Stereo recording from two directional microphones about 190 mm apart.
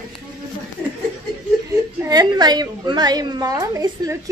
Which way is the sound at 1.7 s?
20° right (ahead or behind).